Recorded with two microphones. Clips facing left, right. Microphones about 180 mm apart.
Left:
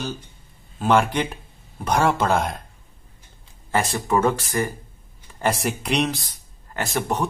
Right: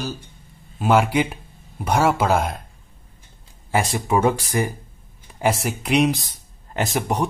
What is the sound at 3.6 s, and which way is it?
Speech, 10° right (ahead or behind).